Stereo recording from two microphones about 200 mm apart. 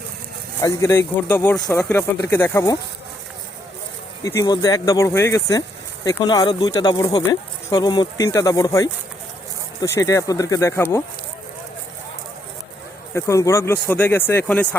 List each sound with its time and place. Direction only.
0.6 s speech: 15° left (ahead or behind)
4.2 s speech: 15° left (ahead or behind)
13.1 s speech: 15° left (ahead or behind)